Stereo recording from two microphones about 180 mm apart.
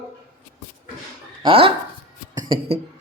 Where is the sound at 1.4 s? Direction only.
30° right (ahead or behind).